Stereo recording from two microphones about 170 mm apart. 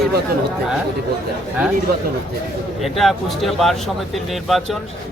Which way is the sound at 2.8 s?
Centre (ahead or behind).